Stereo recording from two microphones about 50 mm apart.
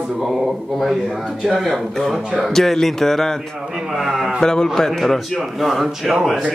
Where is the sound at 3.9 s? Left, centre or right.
Centre.